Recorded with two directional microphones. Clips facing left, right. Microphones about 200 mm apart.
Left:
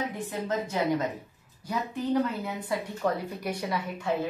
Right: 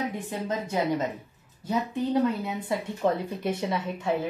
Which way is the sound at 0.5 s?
20° right (ahead or behind).